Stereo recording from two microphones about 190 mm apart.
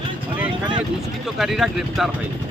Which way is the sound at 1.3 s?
Centre (ahead or behind).